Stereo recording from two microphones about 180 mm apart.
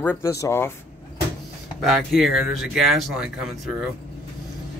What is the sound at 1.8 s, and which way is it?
Speech, centre (ahead or behind).